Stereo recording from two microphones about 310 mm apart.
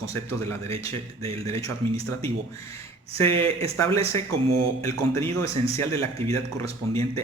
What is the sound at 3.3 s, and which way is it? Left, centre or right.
Speech, centre.